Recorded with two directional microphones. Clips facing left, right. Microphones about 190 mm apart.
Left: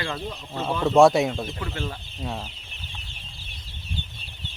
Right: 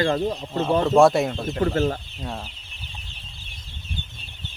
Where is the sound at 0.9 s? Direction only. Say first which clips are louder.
Left 2 dB; centre (ahead or behind).